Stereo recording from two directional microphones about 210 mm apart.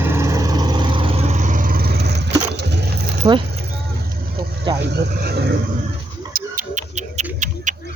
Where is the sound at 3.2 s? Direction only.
20° right (ahead or behind).